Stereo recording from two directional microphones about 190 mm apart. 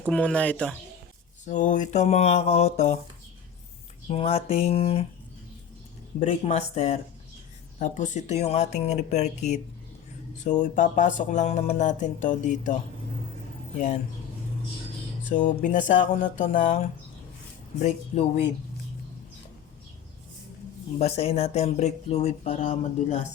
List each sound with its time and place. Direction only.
0.1 s speech: 5° left (ahead or behind)
1.5 s speech: 40° left (ahead or behind)
4.1 s speech: 30° left (ahead or behind)
6.1 s speech: 35° left (ahead or behind)
15.3 s speech: 40° left (ahead or behind)
17.8 s speech: 35° left (ahead or behind)
21.0 s speech: 35° left (ahead or behind)